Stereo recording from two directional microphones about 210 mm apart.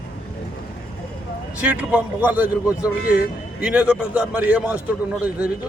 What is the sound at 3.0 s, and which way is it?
Speech, 45° left (ahead or behind).